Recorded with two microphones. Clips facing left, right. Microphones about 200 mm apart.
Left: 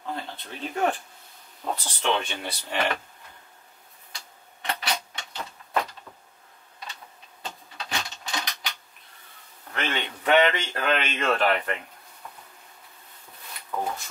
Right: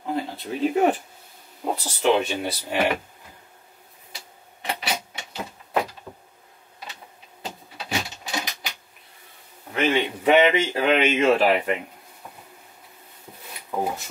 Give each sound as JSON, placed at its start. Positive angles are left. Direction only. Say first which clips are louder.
{"t": 0.0, "sound": "speech", "louder": "right 7 dB", "side_deg": -5}
{"t": 4.1, "sound": "printer", "louder": "right 2 dB", "side_deg": -10}
{"t": 5.7, "sound": "door", "louder": "right 3 dB", "side_deg": -20}
{"t": 7.4, "sound": "a sound", "louder": "right 3 dB", "side_deg": -5}
{"t": 10.6, "sound": "speech", "louder": "right 7 dB", "side_deg": -5}
{"t": 13.7, "sound": "a sound", "louder": "right 4 dB", "side_deg": -20}